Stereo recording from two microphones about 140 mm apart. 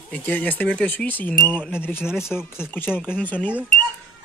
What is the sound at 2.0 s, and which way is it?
Speech, 5° right (ahead or behind).